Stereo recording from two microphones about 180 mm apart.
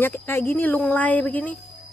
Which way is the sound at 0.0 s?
10° left (ahead or behind).